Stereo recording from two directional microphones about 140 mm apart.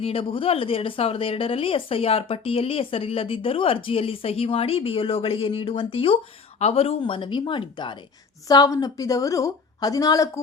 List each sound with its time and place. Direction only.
0.0 s speech: 40° left (ahead or behind)
7.0 s a woman's voice: 35° left (ahead or behind)